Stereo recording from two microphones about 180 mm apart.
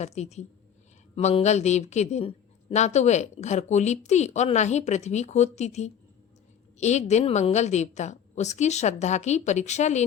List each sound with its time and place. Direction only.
0.0 s speech: 40° left (ahead or behind)